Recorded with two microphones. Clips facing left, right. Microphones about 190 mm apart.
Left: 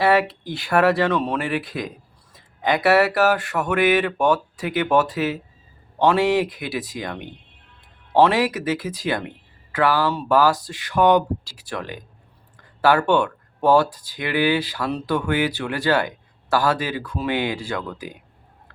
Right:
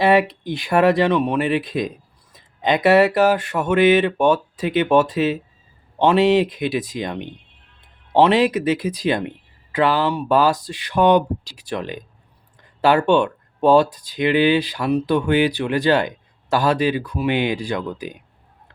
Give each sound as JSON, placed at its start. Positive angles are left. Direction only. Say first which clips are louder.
{"t": 0.0, "sound": "speech", "louder": "right 2 dB", "side_deg": -20}